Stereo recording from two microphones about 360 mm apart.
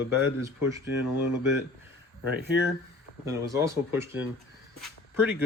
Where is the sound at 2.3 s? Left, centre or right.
Right.